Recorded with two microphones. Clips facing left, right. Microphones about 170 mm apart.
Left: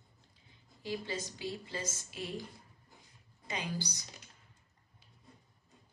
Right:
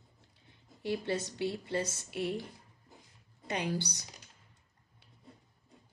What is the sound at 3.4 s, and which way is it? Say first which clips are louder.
Speech: right 5 dB; 65° right (ahead or behind).